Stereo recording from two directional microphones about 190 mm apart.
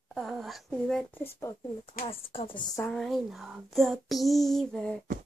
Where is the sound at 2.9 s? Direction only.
Centre (ahead or behind).